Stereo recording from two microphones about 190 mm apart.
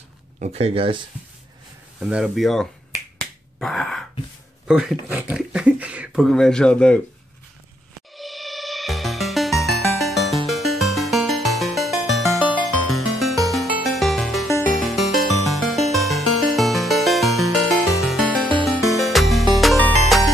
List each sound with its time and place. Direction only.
0.4 s speech: 35° right (ahead or behind)
2.0 s speech: 5° right (ahead or behind)
3.5 s throat clearing: 5° left (ahead or behind)
4.6 s speech: 5° right (ahead or behind)
8.2 s music: centre (ahead or behind)
18.9 s music: centre (ahead or behind)